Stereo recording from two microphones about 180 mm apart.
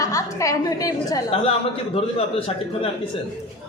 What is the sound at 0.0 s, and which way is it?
A woman's voice, 15° left (ahead or behind).